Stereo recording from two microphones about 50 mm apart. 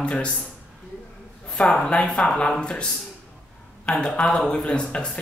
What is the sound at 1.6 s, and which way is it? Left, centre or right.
Speech, left.